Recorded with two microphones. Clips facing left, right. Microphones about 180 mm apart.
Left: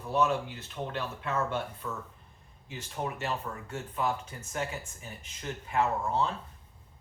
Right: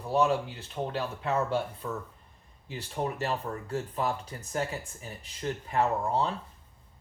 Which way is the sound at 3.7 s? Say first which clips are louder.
Right 1 dB; 35° right (ahead or behind).